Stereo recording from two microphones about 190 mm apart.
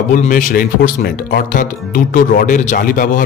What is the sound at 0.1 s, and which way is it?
Speech, 45° left (ahead or behind).